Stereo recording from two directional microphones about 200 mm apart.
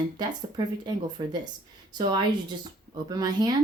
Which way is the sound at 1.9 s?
20° right (ahead or behind).